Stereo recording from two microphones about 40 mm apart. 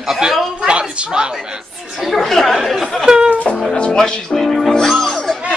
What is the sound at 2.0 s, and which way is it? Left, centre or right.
Speech, centre.